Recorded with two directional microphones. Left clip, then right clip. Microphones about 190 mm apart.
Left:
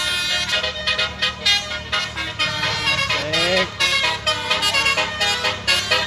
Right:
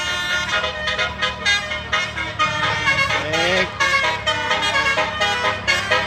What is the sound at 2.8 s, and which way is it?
Vehicle, centre (ahead or behind).